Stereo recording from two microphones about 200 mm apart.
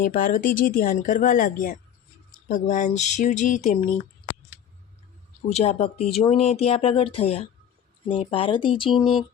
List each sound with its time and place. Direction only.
0.0 s speech: 45° left (ahead or behind)
5.5 s speech: 30° left (ahead or behind)